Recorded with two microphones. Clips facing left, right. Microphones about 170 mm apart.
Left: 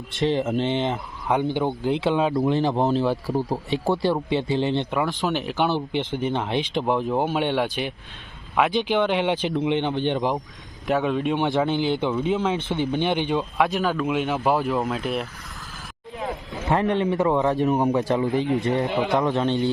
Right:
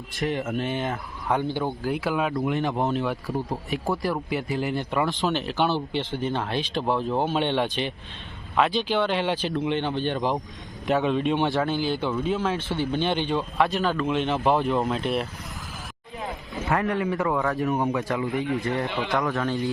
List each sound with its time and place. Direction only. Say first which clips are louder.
0.1 s speech: left 5 dB; 25° left (ahead or behind)
5.2 s speech: left 1 dB; 15° left (ahead or behind)
10.8 s speech: even; 5° left (ahead or behind)
16.6 s speech: left 3 dB; 20° left (ahead or behind)